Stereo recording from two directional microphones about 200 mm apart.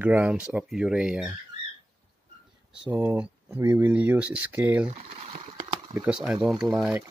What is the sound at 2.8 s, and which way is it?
Speech, 10° right (ahead or behind).